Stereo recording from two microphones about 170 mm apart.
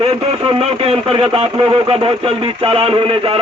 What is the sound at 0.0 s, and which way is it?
A man's voice, 35° right (ahead or behind).